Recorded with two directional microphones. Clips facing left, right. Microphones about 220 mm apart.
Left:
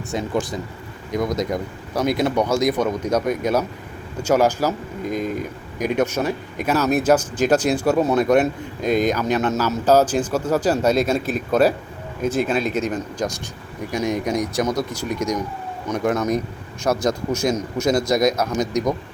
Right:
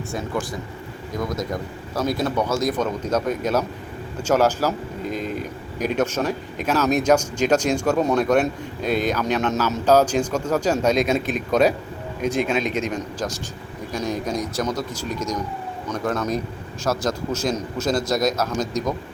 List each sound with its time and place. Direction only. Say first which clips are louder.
0.1 s speech: left 4 dB; 20° left (ahead or behind)
5.8 s speech: left 2 dB; 10° left (ahead or behind)
17.7 s speech: left 4 dB; 5° right (ahead or behind)
18.3 s speech: left 2 dB; 15° left (ahead or behind)